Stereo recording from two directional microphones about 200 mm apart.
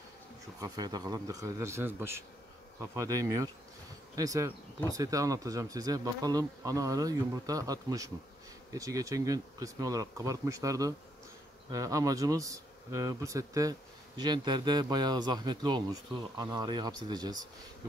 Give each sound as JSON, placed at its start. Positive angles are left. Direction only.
{"t": 0.6, "sound": "speech", "side_deg": -20}